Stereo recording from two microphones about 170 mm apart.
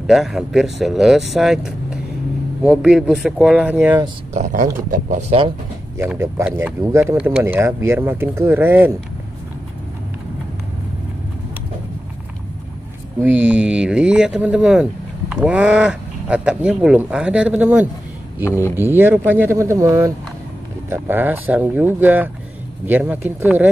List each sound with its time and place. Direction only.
0.0 s speech: centre (ahead or behind)
4.3 s speech: 50° right (ahead or behind)
5.9 s speech: 15° right (ahead or behind)
13.2 s speech: 10° right (ahead or behind)